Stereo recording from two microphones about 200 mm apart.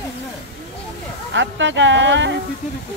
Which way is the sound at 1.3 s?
65° right (ahead or behind).